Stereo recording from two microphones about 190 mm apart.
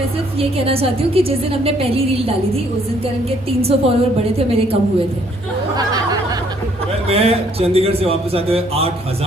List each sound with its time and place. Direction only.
0.3 s a woman's voice: 30° right (ahead or behind)
3.6 s a woman's voice: 30° right (ahead or behind)
5.7 s a sound: 20° right (ahead or behind)
7.1 s a woman's voice: 30° right (ahead or behind)